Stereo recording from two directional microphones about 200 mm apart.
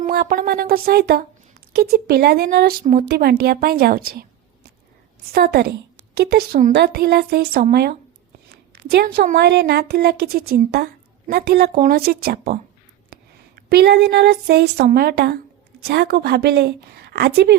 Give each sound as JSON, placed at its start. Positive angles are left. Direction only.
{"t": 0.0, "sound": "speech", "side_deg": -50}
{"t": 5.3, "sound": "speech", "side_deg": -50}
{"t": 13.6, "sound": "a woman's voice", "side_deg": -50}